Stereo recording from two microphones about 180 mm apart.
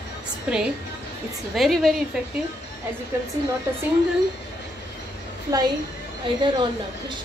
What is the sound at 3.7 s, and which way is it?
Speech, 15° right (ahead or behind).